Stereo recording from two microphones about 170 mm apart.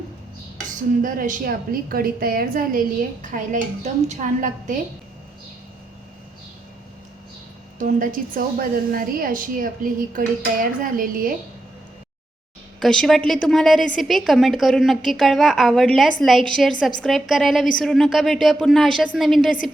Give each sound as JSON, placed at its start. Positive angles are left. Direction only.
{"t": 1.0, "sound": "a woman's voice", "side_deg": -55}
{"t": 7.8, "sound": "a woman's voice", "side_deg": -55}
{"t": 12.8, "sound": "a woman's voice", "side_deg": 0}